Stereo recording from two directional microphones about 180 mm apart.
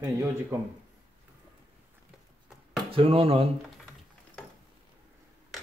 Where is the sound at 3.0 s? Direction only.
30° right (ahead or behind).